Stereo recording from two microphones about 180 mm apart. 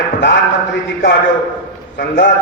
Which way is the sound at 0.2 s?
75° left (ahead or behind).